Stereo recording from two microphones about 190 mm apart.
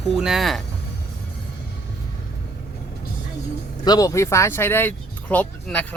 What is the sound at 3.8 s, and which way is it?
Speech, 20° left (ahead or behind).